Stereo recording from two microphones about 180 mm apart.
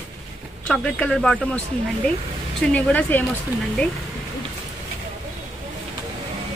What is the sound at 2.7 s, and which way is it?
Speech, 10° left (ahead or behind).